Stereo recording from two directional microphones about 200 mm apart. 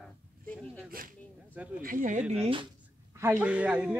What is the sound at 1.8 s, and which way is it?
Speech, 45° right (ahead or behind).